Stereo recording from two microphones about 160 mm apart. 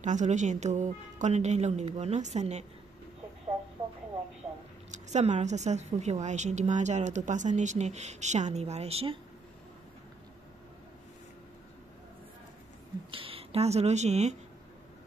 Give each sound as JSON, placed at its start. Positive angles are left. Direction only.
{"t": 0.0, "sound": "a woman's voice", "side_deg": -50}
{"t": 4.9, "sound": "a woman's voice", "side_deg": -45}
{"t": 13.1, "sound": "speech", "side_deg": -35}